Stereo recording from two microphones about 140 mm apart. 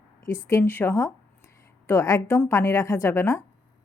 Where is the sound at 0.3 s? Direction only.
20° left (ahead or behind).